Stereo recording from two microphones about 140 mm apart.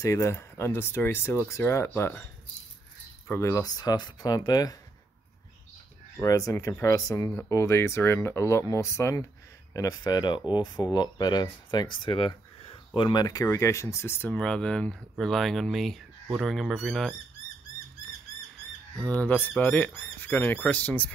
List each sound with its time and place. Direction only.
0.0 s speech: 20° left (ahead or behind)
3.3 s speech: 20° left (ahead or behind)
6.1 s speech: 25° left (ahead or behind); by 17.1 s centre (ahead or behind)
18.9 s speech: 10° left (ahead or behind)